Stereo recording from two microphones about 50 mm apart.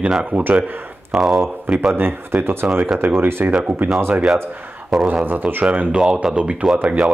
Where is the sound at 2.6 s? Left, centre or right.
Right.